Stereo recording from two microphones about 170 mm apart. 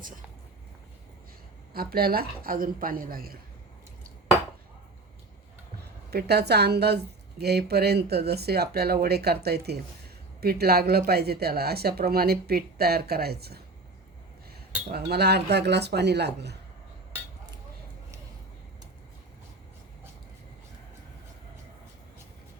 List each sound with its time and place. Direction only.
1.7 s a woman's voice: 65° right (ahead or behind)
6.1 s a woman's voice: 70° right (ahead or behind)
14.8 s a woman's voice: 70° right (ahead or behind)